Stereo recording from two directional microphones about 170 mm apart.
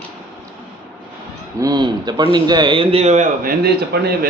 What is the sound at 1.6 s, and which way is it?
A man's voice, 25° right (ahead or behind).